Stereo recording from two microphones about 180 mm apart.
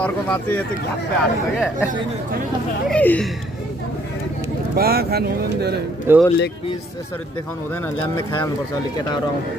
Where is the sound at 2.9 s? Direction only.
5° left (ahead or behind).